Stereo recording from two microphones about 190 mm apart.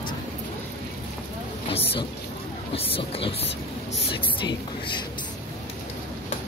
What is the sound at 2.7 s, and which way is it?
Speech, 30° left (ahead or behind).